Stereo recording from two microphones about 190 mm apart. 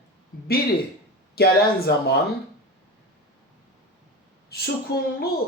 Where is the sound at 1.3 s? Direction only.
55° left (ahead or behind).